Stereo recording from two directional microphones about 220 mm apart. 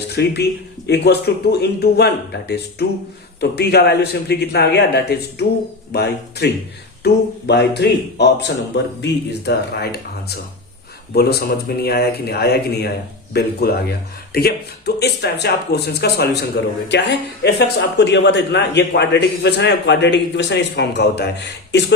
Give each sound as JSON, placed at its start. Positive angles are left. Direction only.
{"t": 0.1, "sound": "speech", "side_deg": 50}